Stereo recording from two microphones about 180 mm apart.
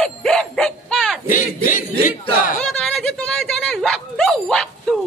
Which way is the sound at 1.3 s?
45° left (ahead or behind).